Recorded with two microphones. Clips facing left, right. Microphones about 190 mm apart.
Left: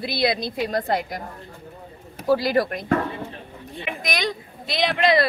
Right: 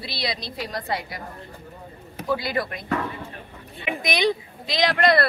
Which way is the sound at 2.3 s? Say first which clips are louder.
Left 6 dB; 45° left (ahead or behind).